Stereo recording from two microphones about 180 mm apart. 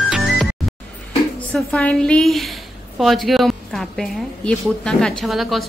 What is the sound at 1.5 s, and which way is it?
A woman's voice, 5° left (ahead or behind).